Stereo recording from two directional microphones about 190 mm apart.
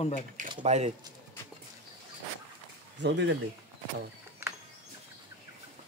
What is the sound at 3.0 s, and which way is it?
Speech, 65° right (ahead or behind).